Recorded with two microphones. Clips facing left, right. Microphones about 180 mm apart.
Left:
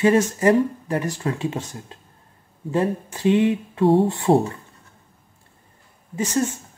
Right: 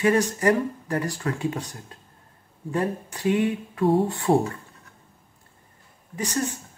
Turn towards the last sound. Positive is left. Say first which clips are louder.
# left 5 dB
turn(degrees=25)  # may be behind; listen again after turning